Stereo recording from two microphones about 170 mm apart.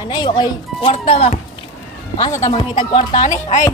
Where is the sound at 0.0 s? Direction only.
25° left (ahead or behind).